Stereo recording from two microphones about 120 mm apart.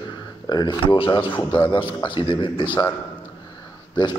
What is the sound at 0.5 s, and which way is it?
A man's voice, 40° left (ahead or behind).